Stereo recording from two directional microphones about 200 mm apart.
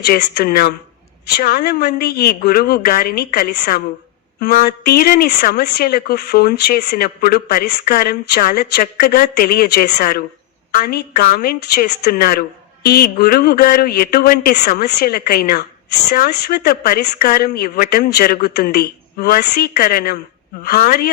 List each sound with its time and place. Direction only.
0.0 s speech: 50° left (ahead or behind)